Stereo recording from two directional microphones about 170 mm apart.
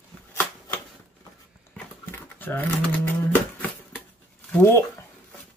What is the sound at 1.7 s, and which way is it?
Dog, 10° left (ahead or behind).